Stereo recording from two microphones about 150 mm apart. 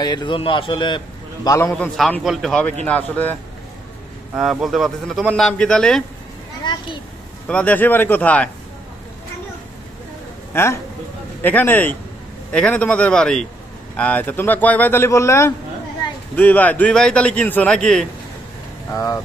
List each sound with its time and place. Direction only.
0.0 s a man's voice: 30° left (ahead or behind)
2.0 s a man's voice: centre (ahead or behind)
4.4 s a man's voice: centre (ahead or behind)
6.6 s a child's voice: 30° left (ahead or behind)
7.4 s a man's voice: 10° left (ahead or behind)
10.5 s a man's voice: 15° left (ahead or behind)
18.9 s speech: 20° left (ahead or behind)